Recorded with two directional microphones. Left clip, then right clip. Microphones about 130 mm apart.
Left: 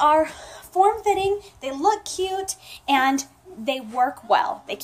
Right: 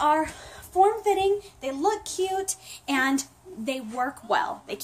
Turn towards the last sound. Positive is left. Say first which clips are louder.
# left 5 dB
turn(degrees=-45)  # may be behind; listen again after turning